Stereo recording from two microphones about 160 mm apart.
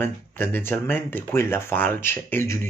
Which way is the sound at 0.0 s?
15° left (ahead or behind).